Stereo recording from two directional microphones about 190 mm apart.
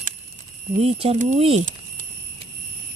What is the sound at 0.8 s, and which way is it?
Speech, 30° right (ahead or behind).